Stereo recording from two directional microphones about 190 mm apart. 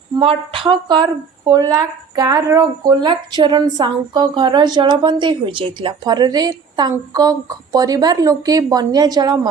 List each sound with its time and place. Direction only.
0.2 s speech: 30° right (ahead or behind)